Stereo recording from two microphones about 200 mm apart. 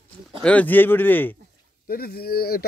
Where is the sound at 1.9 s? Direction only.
50° left (ahead or behind).